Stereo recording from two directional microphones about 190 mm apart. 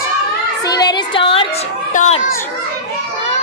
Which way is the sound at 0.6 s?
20° left (ahead or behind).